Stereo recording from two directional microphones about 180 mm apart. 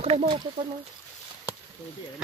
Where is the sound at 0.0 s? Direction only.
35° right (ahead or behind).